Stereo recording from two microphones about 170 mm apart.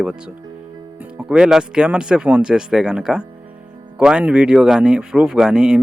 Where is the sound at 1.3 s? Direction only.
5° right (ahead or behind).